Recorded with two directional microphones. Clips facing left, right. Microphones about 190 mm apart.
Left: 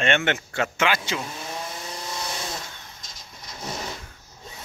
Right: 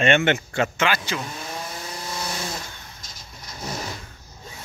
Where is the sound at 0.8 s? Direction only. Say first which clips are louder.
Even; 15° left (ahead or behind).